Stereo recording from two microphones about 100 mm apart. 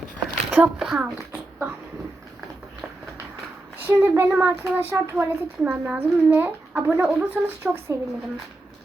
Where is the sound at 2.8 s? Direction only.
5° left (ahead or behind).